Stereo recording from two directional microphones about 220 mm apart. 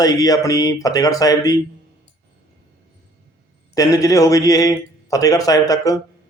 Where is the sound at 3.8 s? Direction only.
15° left (ahead or behind).